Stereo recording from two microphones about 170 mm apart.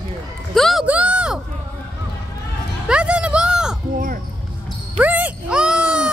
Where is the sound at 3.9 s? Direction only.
55° right (ahead or behind).